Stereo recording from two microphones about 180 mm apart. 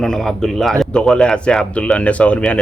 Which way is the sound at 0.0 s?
Centre (ahead or behind).